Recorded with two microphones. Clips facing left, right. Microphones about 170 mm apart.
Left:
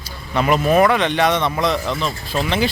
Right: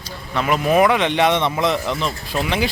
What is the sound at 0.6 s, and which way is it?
A man's voice, 10° right (ahead or behind).